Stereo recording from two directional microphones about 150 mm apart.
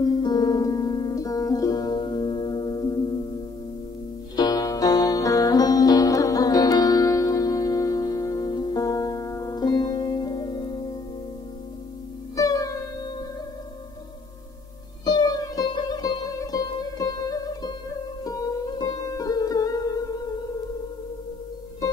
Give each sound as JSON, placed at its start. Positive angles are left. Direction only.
{"t": 0.0, "sound": "music", "side_deg": 30}
{"t": 4.4, "sound": "music", "side_deg": 25}
{"t": 12.4, "sound": "music", "side_deg": 20}
{"t": 15.0, "sound": "music", "side_deg": 30}